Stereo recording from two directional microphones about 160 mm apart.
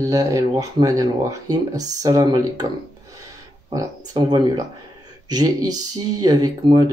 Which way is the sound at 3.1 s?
20° right (ahead or behind).